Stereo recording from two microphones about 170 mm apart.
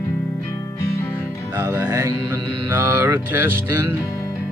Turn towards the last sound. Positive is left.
turn(degrees=-10)  # may be behind; listen again after turning